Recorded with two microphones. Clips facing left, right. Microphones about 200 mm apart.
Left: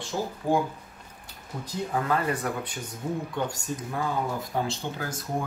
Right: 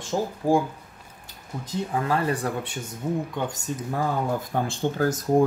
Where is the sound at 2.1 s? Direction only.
30° right (ahead or behind).